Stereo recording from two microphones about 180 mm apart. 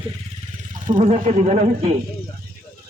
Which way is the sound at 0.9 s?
40° right (ahead or behind).